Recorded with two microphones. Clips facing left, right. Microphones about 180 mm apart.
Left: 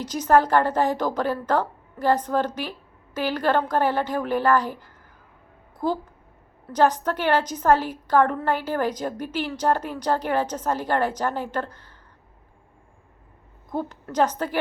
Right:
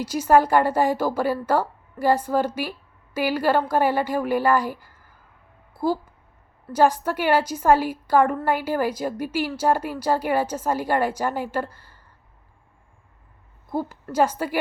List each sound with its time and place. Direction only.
0.0 s a woman's voice: 10° right (ahead or behind)
5.7 s a sound: 10° right (ahead or behind)
6.7 s a woman's voice: 10° right (ahead or behind)
13.7 s a woman's voice: 10° right (ahead or behind)